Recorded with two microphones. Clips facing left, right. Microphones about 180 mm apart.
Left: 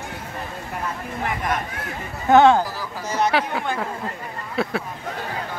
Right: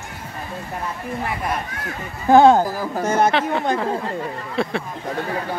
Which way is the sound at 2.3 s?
40° right (ahead or behind).